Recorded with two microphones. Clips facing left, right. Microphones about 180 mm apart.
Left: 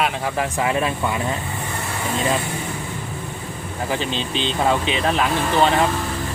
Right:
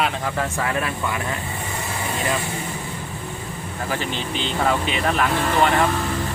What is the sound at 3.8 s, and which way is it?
Speech, 20° left (ahead or behind).